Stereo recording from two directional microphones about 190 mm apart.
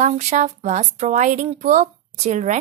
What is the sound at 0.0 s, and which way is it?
A woman's voice, 35° right (ahead or behind).